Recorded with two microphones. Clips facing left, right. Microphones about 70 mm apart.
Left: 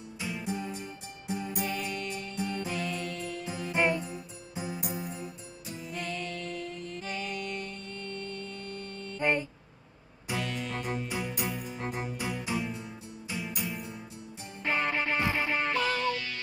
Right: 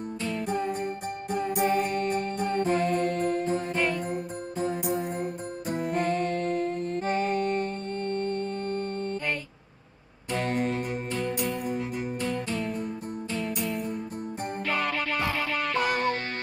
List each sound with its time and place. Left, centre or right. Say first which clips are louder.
0.5 s music: right 7 dB; right
3.7 s music: left 5 dB; centre
4.9 s music: right 8 dB; right
10.3 s music: right 7 dB; right
11.1 s music: right 5 dB; centre
14.7 s music: even; left
15.7 s music: right 3 dB; right